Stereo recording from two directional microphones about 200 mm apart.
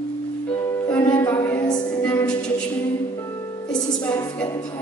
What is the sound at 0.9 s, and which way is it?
Music, 20° left (ahead or behind).